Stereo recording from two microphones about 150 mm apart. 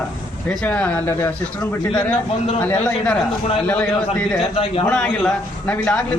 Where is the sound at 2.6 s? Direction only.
10° left (ahead or behind).